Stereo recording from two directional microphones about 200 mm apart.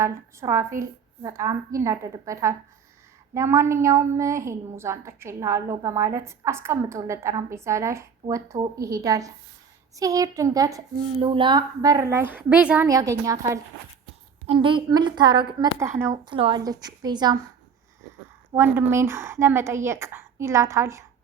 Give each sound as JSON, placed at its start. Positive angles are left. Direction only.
{"t": 0.0, "sound": "a woman's voice", "side_deg": -15}
{"t": 14.4, "sound": "a woman's voice", "side_deg": -25}
{"t": 16.3, "sound": "a woman's voice", "side_deg": -25}
{"t": 18.5, "sound": "a woman's voice", "side_deg": -10}